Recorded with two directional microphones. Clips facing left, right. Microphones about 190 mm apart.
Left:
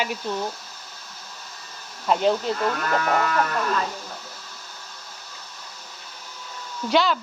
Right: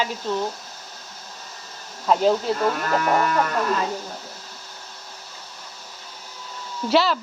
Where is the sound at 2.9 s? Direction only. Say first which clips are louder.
Right 1 dB; 25° right (ahead or behind).